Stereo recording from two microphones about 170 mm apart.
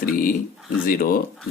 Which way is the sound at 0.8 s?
60° left (ahead or behind).